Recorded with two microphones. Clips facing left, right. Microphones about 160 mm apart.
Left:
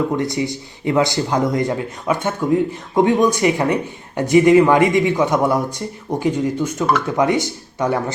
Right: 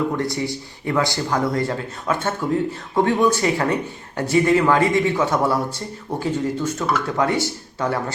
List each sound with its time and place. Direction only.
0.2 s speech: 20° left (ahead or behind)